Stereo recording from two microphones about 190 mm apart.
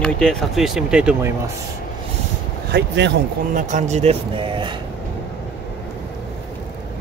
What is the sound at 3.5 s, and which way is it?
Speech, 40° right (ahead or behind).